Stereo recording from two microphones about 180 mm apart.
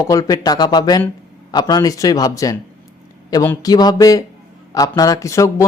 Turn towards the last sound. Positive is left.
turn(degrees=15)  # may be behind; listen again after turning